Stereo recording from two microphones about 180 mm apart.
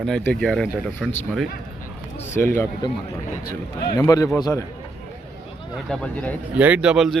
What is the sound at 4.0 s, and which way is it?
Speech, 20° left (ahead or behind).